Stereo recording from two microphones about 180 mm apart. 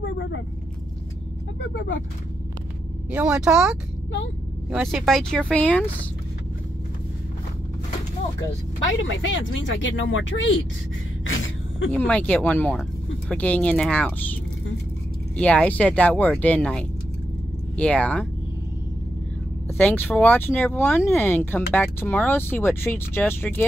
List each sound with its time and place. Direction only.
0.0 s vehicle: 80° left
3.1 s speech: 5° right (ahead or behind)
9.0 s speech: 90° left
11.2 s gasp: 90° left
12.1 s speech: 5° left (ahead or behind)
19.8 s speech: 10° left (ahead or behind)